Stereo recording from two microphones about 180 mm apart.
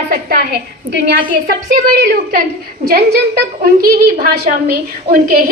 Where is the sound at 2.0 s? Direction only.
60° right (ahead or behind).